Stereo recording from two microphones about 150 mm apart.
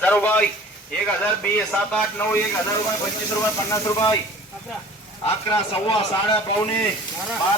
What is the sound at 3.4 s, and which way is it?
Speech, 20° left (ahead or behind).